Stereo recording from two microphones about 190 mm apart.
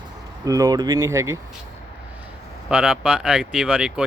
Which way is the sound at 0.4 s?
20° right (ahead or behind).